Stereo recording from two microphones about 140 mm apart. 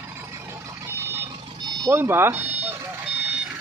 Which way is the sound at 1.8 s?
15° right (ahead or behind).